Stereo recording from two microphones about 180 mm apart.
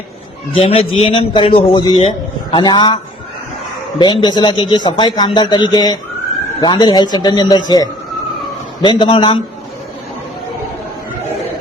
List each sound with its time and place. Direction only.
0.5 s a man's voice: 30° left (ahead or behind)
8.8 s a man's voice: 25° left (ahead or behind)